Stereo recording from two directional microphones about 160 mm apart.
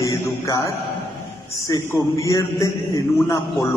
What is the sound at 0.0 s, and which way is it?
A man's voice, 20° left (ahead or behind).